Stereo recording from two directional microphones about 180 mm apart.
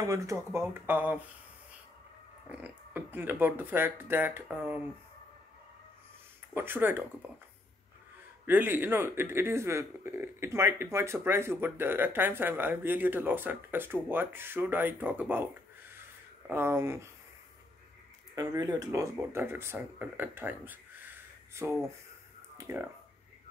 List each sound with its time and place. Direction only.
0.0 s a man's voice: 15° right (ahead or behind)
2.5 s a man's voice: 10° right (ahead or behind)
6.5 s a man's voice: 10° right (ahead or behind)
8.5 s a man's voice: 10° right (ahead or behind)
16.4 s a man's voice: 15° right (ahead or behind)
18.3 s a man's voice: 20° right (ahead or behind)
22.6 s speech: 15° right (ahead or behind)